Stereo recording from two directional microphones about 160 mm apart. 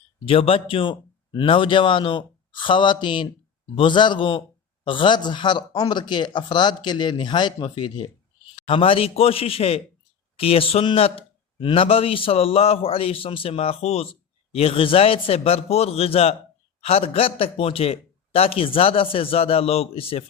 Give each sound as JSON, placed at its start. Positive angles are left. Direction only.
{"t": 0.3, "sound": "a man's voice", "side_deg": 35}